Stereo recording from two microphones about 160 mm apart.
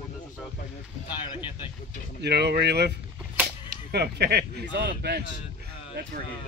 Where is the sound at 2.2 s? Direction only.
90° right.